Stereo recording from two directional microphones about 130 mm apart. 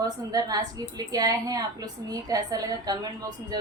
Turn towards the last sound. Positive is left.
turn(degrees=-30)  # may be behind; listen again after turning